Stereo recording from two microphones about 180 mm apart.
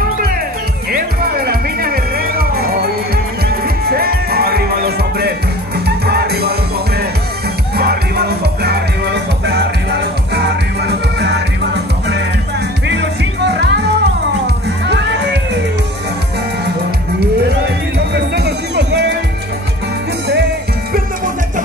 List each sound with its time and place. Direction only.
0.9 s music: 55° right (ahead or behind)
7.7 s music: 60° right (ahead or behind)
17.9 s music: 65° right (ahead or behind)